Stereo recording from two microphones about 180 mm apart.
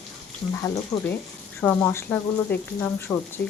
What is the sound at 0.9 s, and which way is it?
Speech, 15° left (ahead or behind).